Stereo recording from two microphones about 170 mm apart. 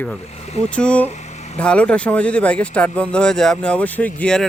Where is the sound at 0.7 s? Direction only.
5° left (ahead or behind).